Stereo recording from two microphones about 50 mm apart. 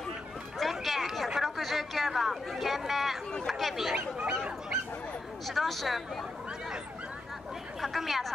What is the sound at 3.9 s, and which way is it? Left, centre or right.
Speech, right.